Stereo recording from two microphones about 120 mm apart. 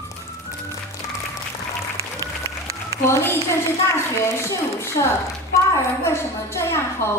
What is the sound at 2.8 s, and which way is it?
A woman's voice, 25° left (ahead or behind).